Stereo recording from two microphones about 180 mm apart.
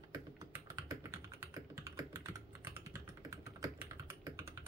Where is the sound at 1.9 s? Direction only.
15° right (ahead or behind).